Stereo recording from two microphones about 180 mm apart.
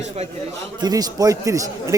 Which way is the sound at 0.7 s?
20° right (ahead or behind).